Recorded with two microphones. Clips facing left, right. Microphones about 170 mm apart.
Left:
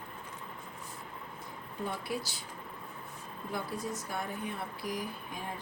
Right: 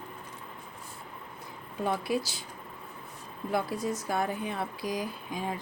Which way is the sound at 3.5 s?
85° right.